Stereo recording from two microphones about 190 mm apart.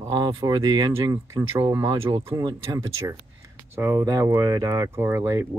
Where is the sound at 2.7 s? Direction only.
20° right (ahead or behind).